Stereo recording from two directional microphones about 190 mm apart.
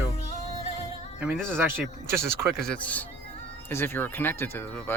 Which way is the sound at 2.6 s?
5° left (ahead or behind).